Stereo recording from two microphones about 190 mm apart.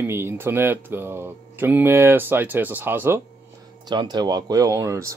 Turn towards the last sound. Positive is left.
turn(degrees=-15)  # may be behind; listen again after turning